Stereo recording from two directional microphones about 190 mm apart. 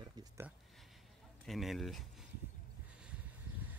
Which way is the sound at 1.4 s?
Centre (ahead or behind).